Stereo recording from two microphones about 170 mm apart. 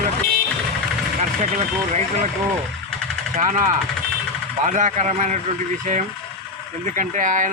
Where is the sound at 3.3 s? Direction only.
50° right (ahead or behind).